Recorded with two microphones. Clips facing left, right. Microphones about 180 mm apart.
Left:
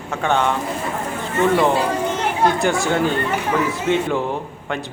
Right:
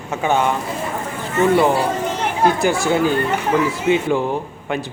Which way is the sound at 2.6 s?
Centre (ahead or behind).